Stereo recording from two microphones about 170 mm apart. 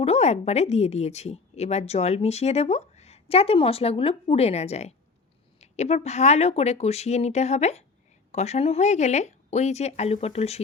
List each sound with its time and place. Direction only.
0.0 s a woman's voice: 40° left (ahead or behind)